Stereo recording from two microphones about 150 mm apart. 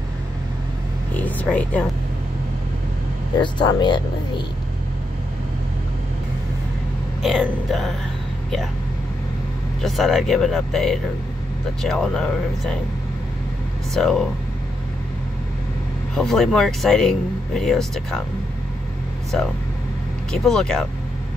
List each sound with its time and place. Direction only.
1.1 s a sound: 10° left (ahead or behind)
3.3 s speech: 30° left (ahead or behind)
7.2 s speech: centre (ahead or behind)
9.8 s speech: centre (ahead or behind)
13.9 s speech: 5° left (ahead or behind)
16.2 s speech: centre (ahead or behind)
19.3 s speech: 5° left (ahead or behind)